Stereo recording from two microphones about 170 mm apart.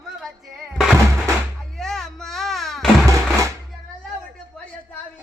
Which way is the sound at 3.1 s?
20° right (ahead or behind).